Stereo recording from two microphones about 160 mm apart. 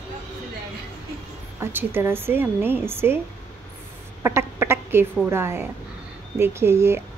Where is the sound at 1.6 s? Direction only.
15° right (ahead or behind).